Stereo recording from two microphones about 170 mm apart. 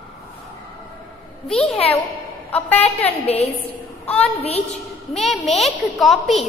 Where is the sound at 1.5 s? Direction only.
5° left (ahead or behind).